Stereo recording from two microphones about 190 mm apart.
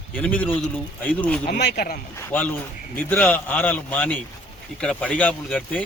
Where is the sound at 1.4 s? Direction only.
50° left (ahead or behind).